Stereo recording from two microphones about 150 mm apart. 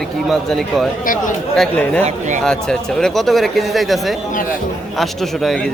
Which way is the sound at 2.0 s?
55° right (ahead or behind).